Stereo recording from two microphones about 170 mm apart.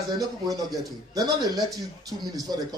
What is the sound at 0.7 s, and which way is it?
Speech, centre (ahead or behind).